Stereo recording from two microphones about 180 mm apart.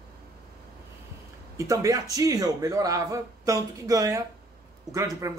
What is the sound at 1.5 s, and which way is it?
Speech, 20° right (ahead or behind).